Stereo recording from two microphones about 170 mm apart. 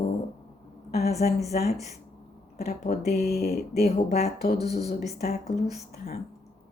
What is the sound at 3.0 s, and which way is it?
Speech, 70° left (ahead or behind).